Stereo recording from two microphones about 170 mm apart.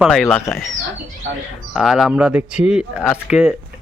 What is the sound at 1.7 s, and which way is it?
Speech, centre (ahead or behind).